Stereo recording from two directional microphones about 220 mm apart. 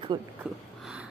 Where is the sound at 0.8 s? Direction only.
5° right (ahead or behind).